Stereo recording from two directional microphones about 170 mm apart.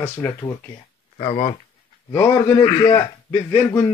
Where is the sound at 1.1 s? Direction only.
35° left (ahead or behind).